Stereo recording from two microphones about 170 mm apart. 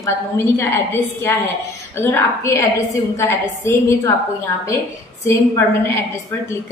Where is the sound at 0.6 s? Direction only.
15° left (ahead or behind).